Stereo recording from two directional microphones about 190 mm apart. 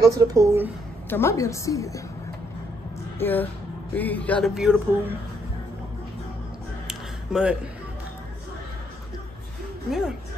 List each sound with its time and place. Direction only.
0.0 s speech: 20° right (ahead or behind)
1.1 s a woman's voice: 15° left (ahead or behind)
3.2 s speech: 10° left (ahead or behind); by 5.1 s 10° right (ahead or behind)
6.9 s a sound: 5° right (ahead or behind)
9.8 s speech: centre (ahead or behind)